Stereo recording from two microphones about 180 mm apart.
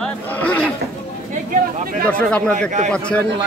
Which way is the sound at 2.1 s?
5° left (ahead or behind).